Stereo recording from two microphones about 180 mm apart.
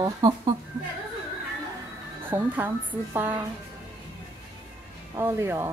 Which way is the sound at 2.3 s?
10° right (ahead or behind).